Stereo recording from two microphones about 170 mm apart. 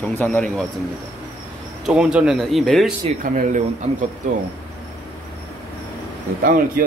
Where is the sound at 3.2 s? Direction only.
50° right (ahead or behind).